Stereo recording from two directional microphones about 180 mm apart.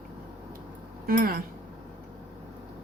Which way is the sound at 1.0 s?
55° right (ahead or behind).